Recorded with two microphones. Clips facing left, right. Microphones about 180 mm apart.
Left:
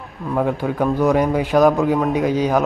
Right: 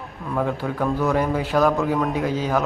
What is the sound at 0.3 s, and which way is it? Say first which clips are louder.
Speech: left 4 dB; 20° left (ahead or behind).